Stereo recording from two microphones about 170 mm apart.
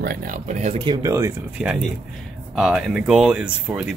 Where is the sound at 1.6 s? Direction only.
5° right (ahead or behind).